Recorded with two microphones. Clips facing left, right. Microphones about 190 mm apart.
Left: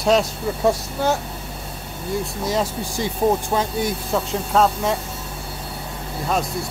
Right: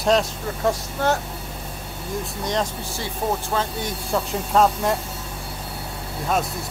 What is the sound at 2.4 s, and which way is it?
Speech, 5° left (ahead or behind).